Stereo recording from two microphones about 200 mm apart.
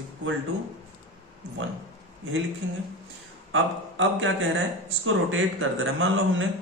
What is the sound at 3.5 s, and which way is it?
A man's voice, 70° right (ahead or behind).